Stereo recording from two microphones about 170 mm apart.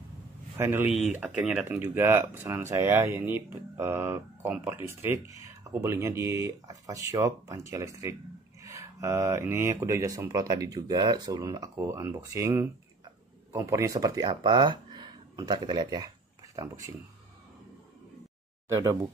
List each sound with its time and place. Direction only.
0.6 s speech: 10° right (ahead or behind)
0.8 s speech: 40° left (ahead or behind)
1.1 s speech: 5° right (ahead or behind)
18.7 s speech: 15° right (ahead or behind)